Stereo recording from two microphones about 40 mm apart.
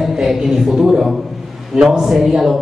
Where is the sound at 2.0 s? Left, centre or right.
Centre.